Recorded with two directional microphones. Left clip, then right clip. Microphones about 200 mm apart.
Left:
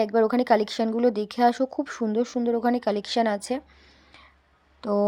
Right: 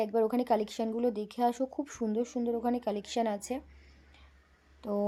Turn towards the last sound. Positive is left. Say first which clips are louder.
# left 9 dB
turn(degrees=15)  # may be behind; listen again after turning